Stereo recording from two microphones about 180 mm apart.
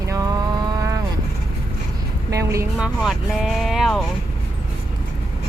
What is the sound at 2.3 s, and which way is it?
Speech, 15° right (ahead or behind).